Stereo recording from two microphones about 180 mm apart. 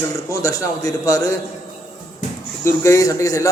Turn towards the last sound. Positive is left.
turn(degrees=20)  # may be behind; listen again after turning